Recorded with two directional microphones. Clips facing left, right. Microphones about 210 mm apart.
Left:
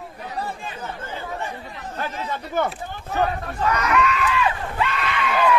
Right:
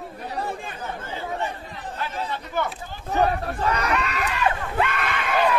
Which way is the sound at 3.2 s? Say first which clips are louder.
Even; 35° right (ahead or behind).